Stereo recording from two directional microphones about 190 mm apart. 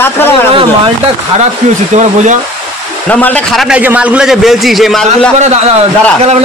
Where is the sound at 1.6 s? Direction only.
40° right (ahead or behind).